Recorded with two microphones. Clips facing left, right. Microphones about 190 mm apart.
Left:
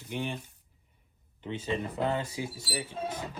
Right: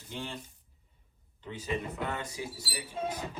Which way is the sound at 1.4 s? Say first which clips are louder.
Left 2 dB; 25° left (ahead or behind).